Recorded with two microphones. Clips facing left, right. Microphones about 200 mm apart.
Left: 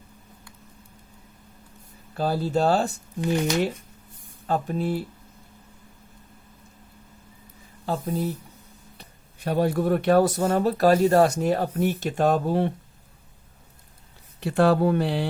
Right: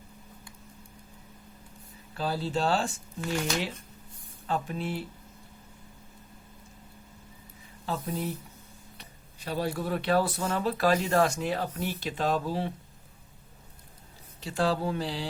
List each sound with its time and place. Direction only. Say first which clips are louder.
2.1 s speech: left 6 dB; 45° left (ahead or behind)
3.2 s speech: left 7 dB; 20° left (ahead or behind)
4.4 s speech: left 6 dB; 40° left (ahead or behind)
8.0 s speech: left 6 dB; 45° left (ahead or behind)
9.4 s speech: left 8 dB; 55° left (ahead or behind)
14.4 s speech: left 8 dB; 60° left (ahead or behind)